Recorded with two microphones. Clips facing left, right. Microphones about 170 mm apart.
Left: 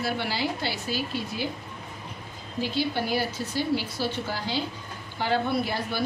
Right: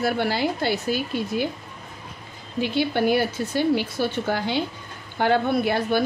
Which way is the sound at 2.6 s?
60° right (ahead or behind).